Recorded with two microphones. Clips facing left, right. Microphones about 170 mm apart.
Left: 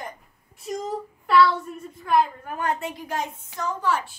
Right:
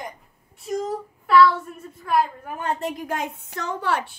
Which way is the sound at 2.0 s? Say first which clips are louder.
Left 1 dB; 5° right (ahead or behind).